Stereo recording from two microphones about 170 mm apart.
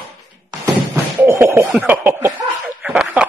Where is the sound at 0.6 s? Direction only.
15° right (ahead or behind).